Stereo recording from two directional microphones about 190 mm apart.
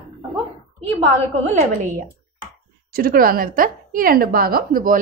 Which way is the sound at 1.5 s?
45° right (ahead or behind).